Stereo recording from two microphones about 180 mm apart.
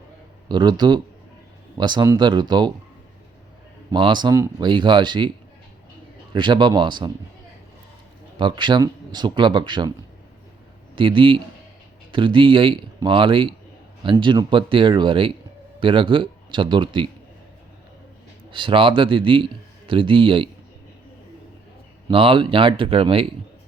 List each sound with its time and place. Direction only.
0.4 s speech: 25° right (ahead or behind)
3.9 s speech: 25° right (ahead or behind)
6.3 s speech: 25° right (ahead or behind)
8.4 s speech: 25° right (ahead or behind)
10.9 s speech: 30° right (ahead or behind)
18.5 s speech: 30° right (ahead or behind)
22.1 s speech: 30° right (ahead or behind)